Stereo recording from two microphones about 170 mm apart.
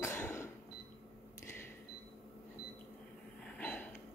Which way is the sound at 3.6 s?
10° left (ahead or behind).